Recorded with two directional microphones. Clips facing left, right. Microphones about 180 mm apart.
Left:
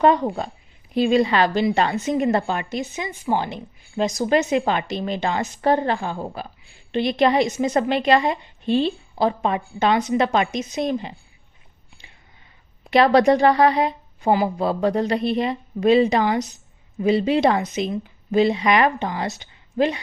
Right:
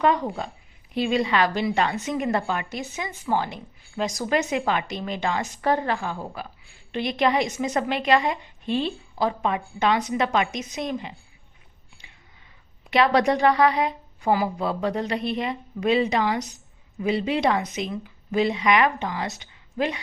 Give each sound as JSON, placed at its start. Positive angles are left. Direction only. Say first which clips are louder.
{"t": 0.0, "sound": "a woman's voice", "louder": "left 5 dB", "side_deg": 35}
{"t": 12.0, "sound": "a sound", "louder": "left 2 dB", "side_deg": 30}
{"t": 12.9, "sound": "a woman's voice", "louder": "left 5 dB", "side_deg": 35}